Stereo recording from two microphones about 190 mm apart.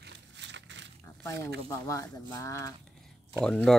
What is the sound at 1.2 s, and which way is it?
Speech, 15° left (ahead or behind).